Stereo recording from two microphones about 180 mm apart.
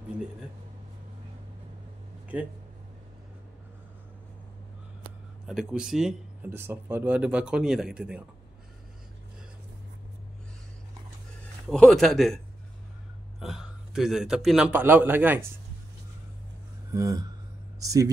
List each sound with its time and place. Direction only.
2.3 s a sound: 5° right (ahead or behind)
5.5 s speech: centre (ahead or behind)
11.7 s speech: 5° left (ahead or behind)
13.4 s speech: centre (ahead or behind)
16.9 s a sound: 15° right (ahead or behind)
17.7 s speech: 20° right (ahead or behind)